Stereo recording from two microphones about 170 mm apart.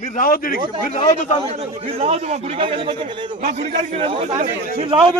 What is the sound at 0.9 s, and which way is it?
Speech, 40° left (ahead or behind).